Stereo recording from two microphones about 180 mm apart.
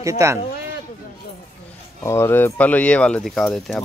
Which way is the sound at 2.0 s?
15° left (ahead or behind).